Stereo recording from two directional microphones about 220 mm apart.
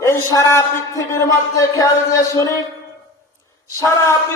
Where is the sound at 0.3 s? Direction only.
15° left (ahead or behind).